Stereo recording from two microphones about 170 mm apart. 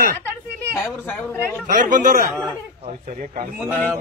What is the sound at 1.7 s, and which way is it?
Speech, 50° right (ahead or behind).